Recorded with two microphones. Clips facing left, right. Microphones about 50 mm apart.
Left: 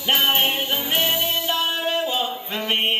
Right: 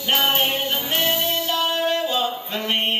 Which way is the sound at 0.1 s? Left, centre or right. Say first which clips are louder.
Even; centre.